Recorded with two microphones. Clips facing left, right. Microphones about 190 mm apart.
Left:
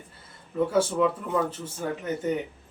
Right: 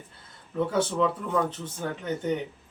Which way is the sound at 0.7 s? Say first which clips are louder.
Left 2 dB; 10° left (ahead or behind).